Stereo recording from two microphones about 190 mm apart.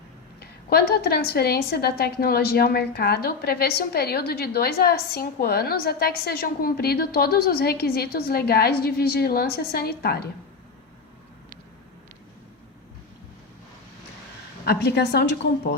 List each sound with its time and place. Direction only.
0.7 s a woman's voice: 55° left (ahead or behind)
14.6 s a woman's voice: 55° left (ahead or behind)